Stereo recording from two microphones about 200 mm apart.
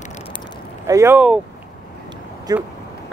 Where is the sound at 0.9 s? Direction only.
15° right (ahead or behind).